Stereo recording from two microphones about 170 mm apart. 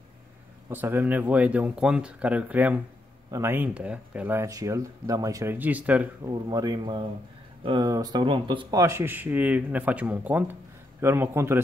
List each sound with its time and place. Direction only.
0.7 s speech: 10° right (ahead or behind)
6.2 s speech: 20° right (ahead or behind)